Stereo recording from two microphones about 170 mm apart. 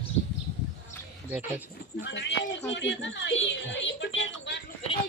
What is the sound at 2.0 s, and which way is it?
Speech, 90° left.